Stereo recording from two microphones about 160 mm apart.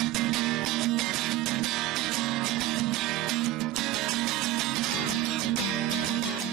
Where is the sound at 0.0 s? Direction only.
Centre (ahead or behind).